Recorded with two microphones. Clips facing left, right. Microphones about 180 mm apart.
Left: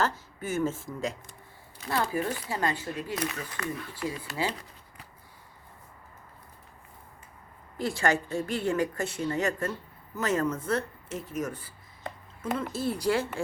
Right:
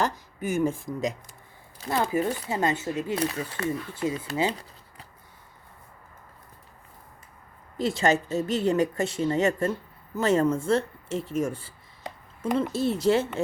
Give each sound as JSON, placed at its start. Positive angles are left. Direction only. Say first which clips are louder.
{"t": 0.0, "sound": "a woman's voice", "louder": "right 2 dB", "side_deg": -15}
{"t": 2.2, "sound": "speech", "louder": "right 4 dB", "side_deg": -20}
{"t": 7.8, "sound": "speech", "louder": "right 4 dB", "side_deg": -20}